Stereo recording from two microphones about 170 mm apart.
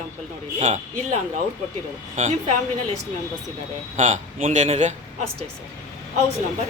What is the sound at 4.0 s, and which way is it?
Speech, 45° right (ahead or behind).